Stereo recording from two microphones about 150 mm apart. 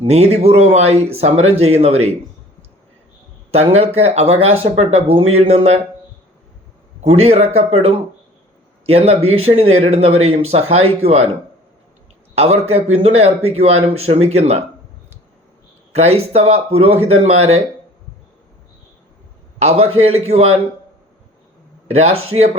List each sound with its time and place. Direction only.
0.0 s a man's voice: 45° right (ahead or behind)
3.5 s a man's voice: 45° right (ahead or behind)
7.0 s a man's voice: 45° right (ahead or behind)
12.3 s a man's voice: 45° right (ahead or behind)
16.0 s a man's voice: 45° right (ahead or behind)
19.5 s a man's voice: 45° right (ahead or behind)
21.8 s a man's voice: 45° right (ahead or behind)